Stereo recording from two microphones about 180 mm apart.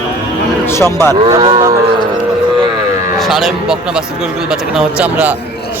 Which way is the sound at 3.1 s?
Centre (ahead or behind).